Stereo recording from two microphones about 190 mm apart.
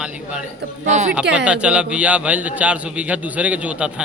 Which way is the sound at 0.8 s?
40° right (ahead or behind).